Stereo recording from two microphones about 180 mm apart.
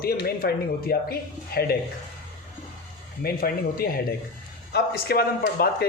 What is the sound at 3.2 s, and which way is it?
Speech, 55° left (ahead or behind).